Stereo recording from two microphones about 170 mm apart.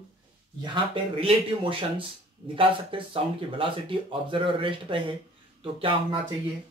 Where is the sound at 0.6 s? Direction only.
30° right (ahead or behind).